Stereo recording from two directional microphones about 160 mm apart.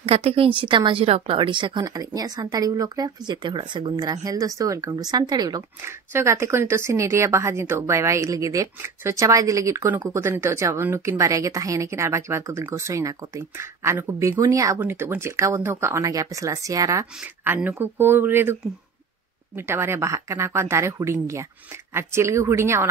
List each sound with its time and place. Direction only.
0.0 s a woman's voice: 40° right (ahead or behind); by 22.8 s 15° right (ahead or behind)